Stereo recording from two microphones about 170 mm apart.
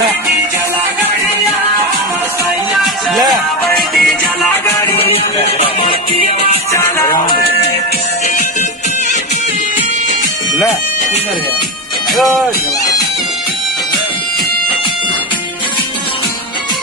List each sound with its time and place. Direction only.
2.8 s music: centre (ahead or behind)
4.9 s music: 35° left (ahead or behind)
6.7 s music: 15° left (ahead or behind)
12.1 s speech: centre (ahead or behind)